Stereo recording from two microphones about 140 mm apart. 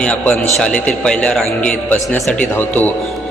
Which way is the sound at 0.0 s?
10° left (ahead or behind).